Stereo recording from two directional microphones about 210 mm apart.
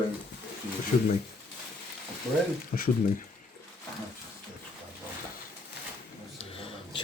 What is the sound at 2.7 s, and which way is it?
Speech, 45° left (ahead or behind).